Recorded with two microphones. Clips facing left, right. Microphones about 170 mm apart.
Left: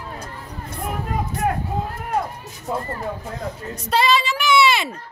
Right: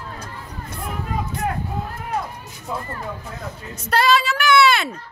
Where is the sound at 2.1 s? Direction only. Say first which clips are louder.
Left 3 dB; 45° left (ahead or behind).